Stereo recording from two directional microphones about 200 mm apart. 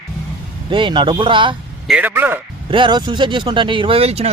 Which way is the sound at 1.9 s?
5° right (ahead or behind).